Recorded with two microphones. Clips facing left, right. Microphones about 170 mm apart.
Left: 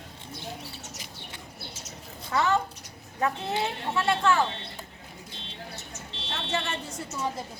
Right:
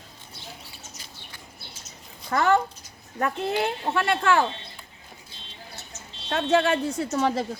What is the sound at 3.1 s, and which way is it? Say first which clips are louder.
Speech: right 3 dB; 60° right (ahead or behind).